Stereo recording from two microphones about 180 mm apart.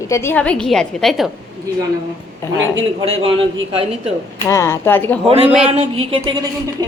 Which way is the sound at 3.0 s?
30° right (ahead or behind).